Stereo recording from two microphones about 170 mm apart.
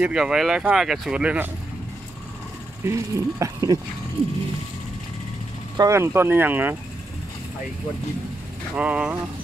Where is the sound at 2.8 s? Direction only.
20° right (ahead or behind).